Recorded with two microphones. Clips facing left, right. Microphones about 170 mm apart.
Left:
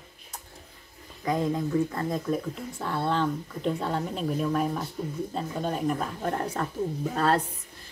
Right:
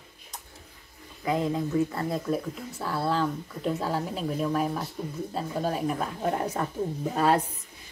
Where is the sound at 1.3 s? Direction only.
10° right (ahead or behind).